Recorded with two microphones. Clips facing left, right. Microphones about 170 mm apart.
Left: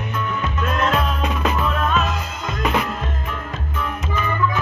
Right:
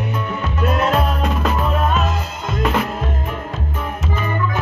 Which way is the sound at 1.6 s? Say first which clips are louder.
Right 2 dB; 50° right (ahead or behind).